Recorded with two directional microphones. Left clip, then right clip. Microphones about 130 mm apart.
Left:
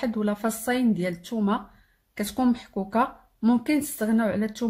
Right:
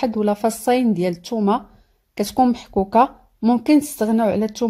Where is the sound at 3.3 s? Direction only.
35° right (ahead or behind).